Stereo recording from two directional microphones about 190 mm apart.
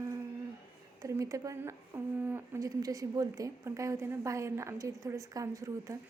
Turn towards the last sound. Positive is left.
turn(degrees=-15)  # may be behind; listen again after turning